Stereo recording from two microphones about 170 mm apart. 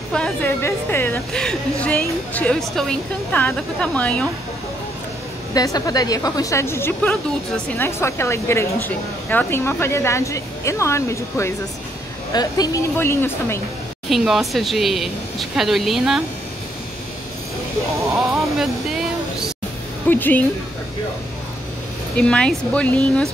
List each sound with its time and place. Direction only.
0.1 s a woman's voice: 10° left (ahead or behind)
5.5 s a woman's voice: 20° left (ahead or behind)
14.0 s speech: centre (ahead or behind)
18.3 s vehicle: centre (ahead or behind)
20.1 s a woman's voice: 10° left (ahead or behind)
22.2 s speech: 5° left (ahead or behind)